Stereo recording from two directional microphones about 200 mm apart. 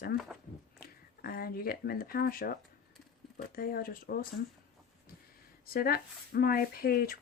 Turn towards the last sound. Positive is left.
turn(degrees=50)  # may be behind; listen again after turning